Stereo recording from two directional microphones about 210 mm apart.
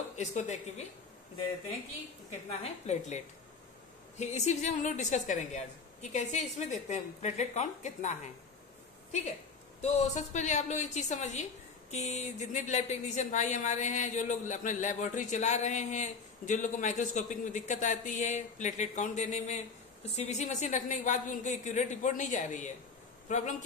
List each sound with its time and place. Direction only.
0.2 s speech: 35° left (ahead or behind)
2.6 s speech: 35° left (ahead or behind)
4.2 s speech: 35° left (ahead or behind)
9.8 s a man's voice: 35° left (ahead or behind)